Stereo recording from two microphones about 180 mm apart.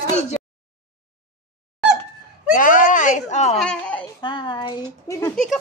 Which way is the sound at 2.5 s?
50° left (ahead or behind).